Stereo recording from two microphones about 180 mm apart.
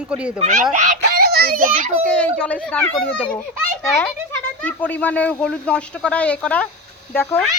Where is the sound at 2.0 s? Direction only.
5° left (ahead or behind).